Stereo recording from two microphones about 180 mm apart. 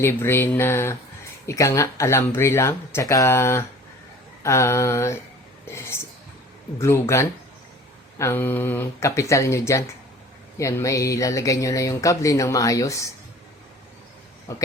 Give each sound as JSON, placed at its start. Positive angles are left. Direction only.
{"t": 0.0, "sound": "speech", "side_deg": 10}